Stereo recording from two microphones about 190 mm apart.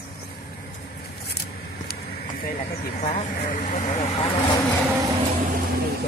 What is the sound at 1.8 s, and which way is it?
Speech, 50° left (ahead or behind).